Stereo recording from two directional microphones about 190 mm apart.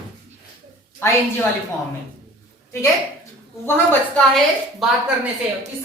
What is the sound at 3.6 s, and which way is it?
Speech, 10° left (ahead or behind).